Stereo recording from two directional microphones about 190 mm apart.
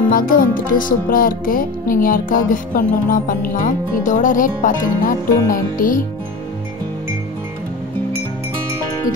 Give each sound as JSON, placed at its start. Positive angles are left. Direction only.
{"t": 0.1, "sound": "music", "side_deg": 50}